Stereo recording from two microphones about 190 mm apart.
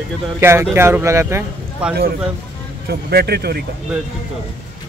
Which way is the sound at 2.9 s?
55° right (ahead or behind).